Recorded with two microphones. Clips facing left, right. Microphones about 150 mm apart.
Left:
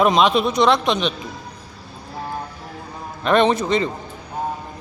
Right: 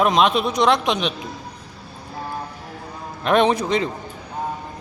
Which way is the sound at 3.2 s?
10° right (ahead or behind).